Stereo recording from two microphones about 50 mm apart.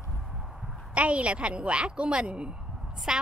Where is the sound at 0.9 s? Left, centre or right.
Right.